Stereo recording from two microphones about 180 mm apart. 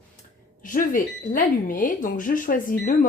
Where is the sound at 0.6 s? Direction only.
45° left (ahead or behind).